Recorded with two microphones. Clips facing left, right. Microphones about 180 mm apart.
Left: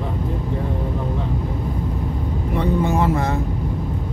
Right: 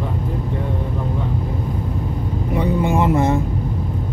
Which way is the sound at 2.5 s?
15° right (ahead or behind).